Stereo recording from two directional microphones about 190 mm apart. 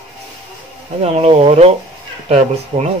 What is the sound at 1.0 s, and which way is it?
Speech, 35° right (ahead or behind).